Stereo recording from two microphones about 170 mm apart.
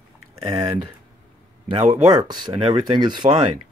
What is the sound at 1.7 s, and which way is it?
Speech, 40° right (ahead or behind).